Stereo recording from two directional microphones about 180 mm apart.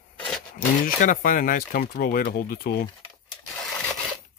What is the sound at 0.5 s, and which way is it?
Speech, 50° left (ahead or behind).